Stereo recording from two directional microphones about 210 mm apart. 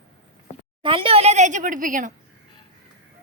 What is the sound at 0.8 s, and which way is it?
A woman's voice, 25° right (ahead or behind).